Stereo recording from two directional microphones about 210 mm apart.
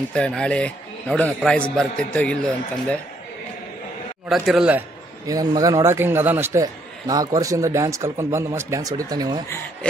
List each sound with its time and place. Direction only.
0.1 s a man's voice: 5° left (ahead or behind)
4.3 s a man's voice: centre (ahead or behind)
5.2 s a man's voice: 15° right (ahead or behind)